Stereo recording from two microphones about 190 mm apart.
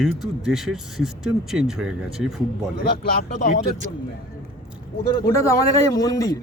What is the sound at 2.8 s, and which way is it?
Speech, 55° left (ahead or behind).